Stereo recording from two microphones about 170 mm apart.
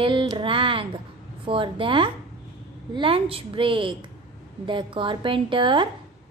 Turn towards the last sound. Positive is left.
turn(degrees=-30)  # may be behind; listen again after turning